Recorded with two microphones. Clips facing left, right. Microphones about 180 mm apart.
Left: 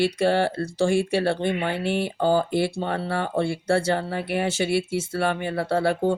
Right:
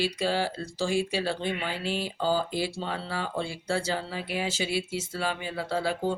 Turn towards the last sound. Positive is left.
turn(degrees=60)  # may be behind; listen again after turning